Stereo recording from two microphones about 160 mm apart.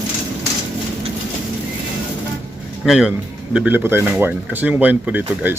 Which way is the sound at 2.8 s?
Centre (ahead or behind).